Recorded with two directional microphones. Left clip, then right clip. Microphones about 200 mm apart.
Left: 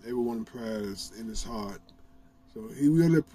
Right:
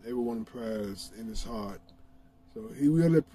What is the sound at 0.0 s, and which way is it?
Speech, 10° left (ahead or behind).